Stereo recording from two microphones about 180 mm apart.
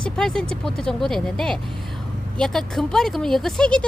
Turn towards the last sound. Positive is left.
turn(degrees=5)  # may be behind; listen again after turning